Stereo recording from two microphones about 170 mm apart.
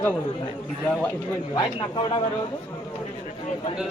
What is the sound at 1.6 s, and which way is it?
Speech, 30° left (ahead or behind).